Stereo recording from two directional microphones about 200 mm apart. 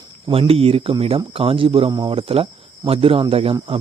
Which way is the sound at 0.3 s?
30° right (ahead or behind).